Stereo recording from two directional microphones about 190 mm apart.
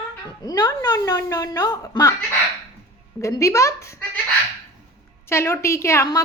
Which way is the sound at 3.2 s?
15° left (ahead or behind).